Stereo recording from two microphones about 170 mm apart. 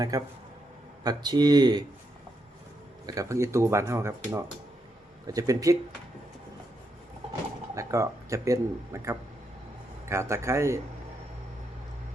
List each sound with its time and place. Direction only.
0.1 s speech: 20° right (ahead or behind)
3.1 s speech: 20° right (ahead or behind)
7.8 s speech: 20° right (ahead or behind)